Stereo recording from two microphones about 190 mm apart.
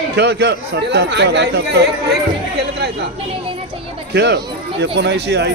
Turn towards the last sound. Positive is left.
turn(degrees=-65)  # may be behind; listen again after turning